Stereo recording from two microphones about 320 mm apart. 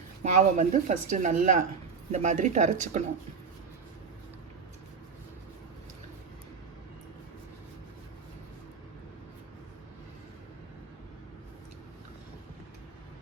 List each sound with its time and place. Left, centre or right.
0.2 s a woman's voice: right